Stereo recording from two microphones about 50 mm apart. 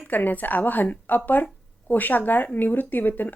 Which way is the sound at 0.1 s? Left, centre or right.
Left.